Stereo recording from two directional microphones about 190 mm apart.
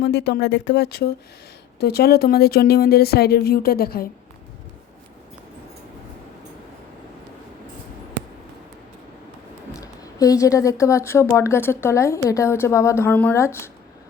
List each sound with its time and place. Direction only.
0.0 s speech: 60° left (ahead or behind)
9.7 s speech: 20° left (ahead or behind)